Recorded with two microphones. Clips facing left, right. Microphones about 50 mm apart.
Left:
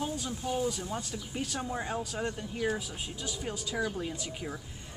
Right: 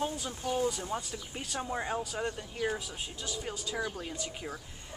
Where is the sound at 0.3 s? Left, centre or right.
Right.